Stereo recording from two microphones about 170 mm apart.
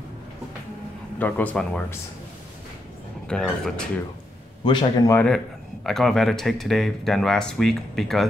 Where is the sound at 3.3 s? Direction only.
Centre (ahead or behind).